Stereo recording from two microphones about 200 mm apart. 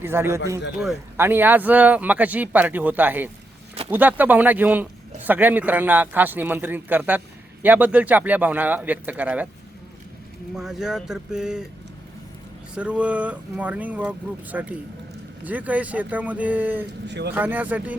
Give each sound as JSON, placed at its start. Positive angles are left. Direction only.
{"t": 0.0, "sound": "speech", "side_deg": -10}
{"t": 10.5, "sound": "speech", "side_deg": 0}
{"t": 12.7, "sound": "speech", "side_deg": -5}
{"t": 17.1, "sound": "speech", "side_deg": -60}
{"t": 17.3, "sound": "speech", "side_deg": -10}